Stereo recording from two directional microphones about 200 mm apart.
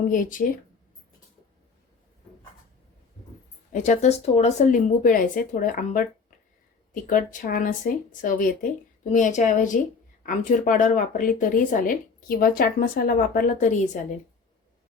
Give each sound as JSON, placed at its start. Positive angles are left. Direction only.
{"t": 0.1, "sound": "speech", "side_deg": 40}
{"t": 3.7, "sound": "speech", "side_deg": 35}